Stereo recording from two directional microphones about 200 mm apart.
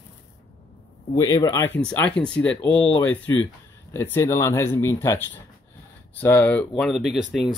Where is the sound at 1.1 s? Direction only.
20° left (ahead or behind).